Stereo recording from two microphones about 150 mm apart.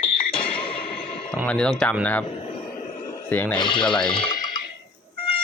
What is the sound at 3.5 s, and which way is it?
Speech, 30° left (ahead or behind).